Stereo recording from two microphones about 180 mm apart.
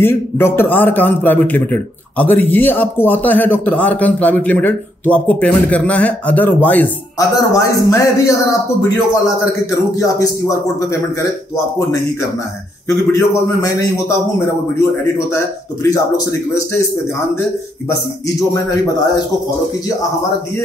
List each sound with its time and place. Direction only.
0.0 s a man's voice: 10° left (ahead or behind)
9.7 s a man's voice: 15° left (ahead or behind)
12.8 s a man's voice: 15° left (ahead or behind)
17.8 s a man's voice: 15° left (ahead or behind)